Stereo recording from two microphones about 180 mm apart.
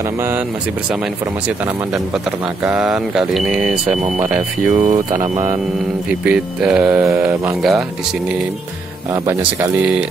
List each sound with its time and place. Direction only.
2.6 s speech: 5° right (ahead or behind)
4.7 s speech: 40° right (ahead or behind)
6.2 s speech: 5° right (ahead or behind)
9.1 s speech: 15° right (ahead or behind)